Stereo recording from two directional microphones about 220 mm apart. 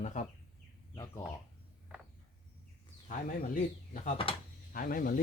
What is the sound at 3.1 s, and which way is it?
Speech, 35° left (ahead or behind).